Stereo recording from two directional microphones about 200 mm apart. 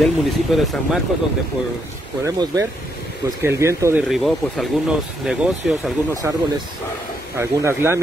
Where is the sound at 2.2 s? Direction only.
15° right (ahead or behind).